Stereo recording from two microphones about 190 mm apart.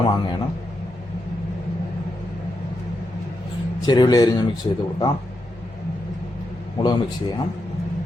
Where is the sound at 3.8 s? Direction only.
20° left (ahead or behind).